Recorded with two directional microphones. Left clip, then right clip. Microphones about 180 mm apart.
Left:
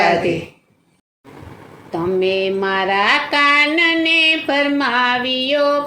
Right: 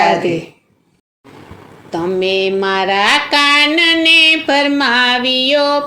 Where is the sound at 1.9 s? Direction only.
35° right (ahead or behind).